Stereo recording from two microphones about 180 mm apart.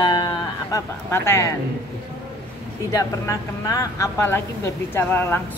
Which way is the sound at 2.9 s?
20° left (ahead or behind).